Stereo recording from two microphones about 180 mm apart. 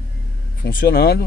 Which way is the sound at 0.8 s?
65° left (ahead or behind).